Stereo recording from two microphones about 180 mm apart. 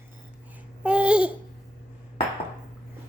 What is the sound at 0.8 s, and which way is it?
Babbling, 5° right (ahead or behind).